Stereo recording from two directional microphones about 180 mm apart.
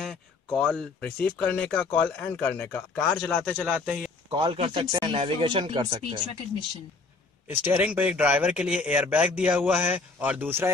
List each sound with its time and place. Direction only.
0.0 s speech: 5° left (ahead or behind)
4.3 s speech: 30° right (ahead or behind)
7.7 s speech: 10° right (ahead or behind)